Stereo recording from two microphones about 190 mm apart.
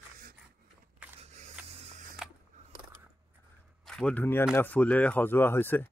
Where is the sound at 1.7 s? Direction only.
35° right (ahead or behind).